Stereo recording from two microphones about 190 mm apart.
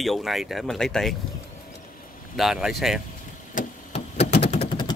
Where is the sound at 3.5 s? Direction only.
35° left (ahead or behind).